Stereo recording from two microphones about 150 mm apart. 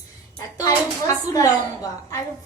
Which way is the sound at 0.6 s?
20° left (ahead or behind).